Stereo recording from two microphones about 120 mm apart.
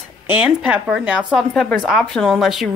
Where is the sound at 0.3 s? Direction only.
10° right (ahead or behind).